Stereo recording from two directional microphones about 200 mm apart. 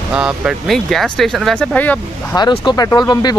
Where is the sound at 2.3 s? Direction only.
20° left (ahead or behind).